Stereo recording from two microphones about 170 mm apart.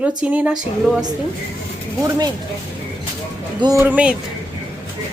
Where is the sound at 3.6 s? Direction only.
20° right (ahead or behind).